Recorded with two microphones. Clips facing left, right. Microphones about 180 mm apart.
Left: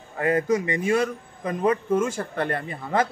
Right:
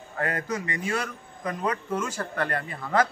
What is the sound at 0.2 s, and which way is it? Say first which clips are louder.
A man's voice: left 8 dB; 20° left (ahead or behind).